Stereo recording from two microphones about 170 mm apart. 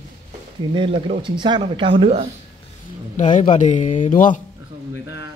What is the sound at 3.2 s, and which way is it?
Speech, 45° left (ahead or behind).